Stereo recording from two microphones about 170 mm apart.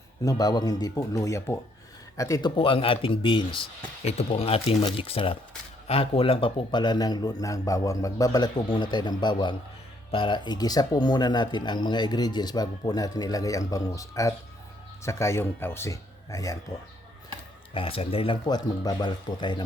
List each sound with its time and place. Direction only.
0.3 s speech: 20° left (ahead or behind)
2.6 s speech: 30° left (ahead or behind)
17.7 s speech: 35° left (ahead or behind)